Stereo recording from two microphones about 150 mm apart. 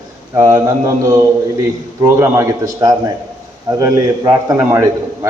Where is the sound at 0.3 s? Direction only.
20° right (ahead or behind).